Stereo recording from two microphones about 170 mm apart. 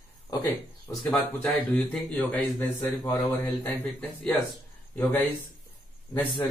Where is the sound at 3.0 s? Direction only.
20° left (ahead or behind).